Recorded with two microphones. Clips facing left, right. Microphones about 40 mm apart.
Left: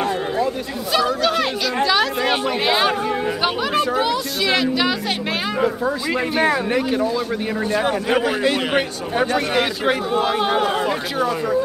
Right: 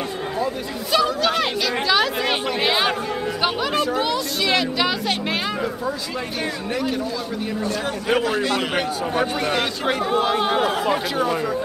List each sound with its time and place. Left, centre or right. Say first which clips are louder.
0.9 s speech: left 1 dB; centre
6.7 s speech: left 4 dB; left
8.1 s a man's voice: right 1 dB; centre